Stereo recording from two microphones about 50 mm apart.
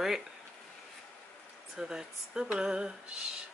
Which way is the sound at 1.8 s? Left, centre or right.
Centre.